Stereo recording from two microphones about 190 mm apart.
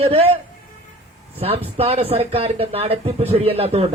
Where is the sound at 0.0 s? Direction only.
30° right (ahead or behind).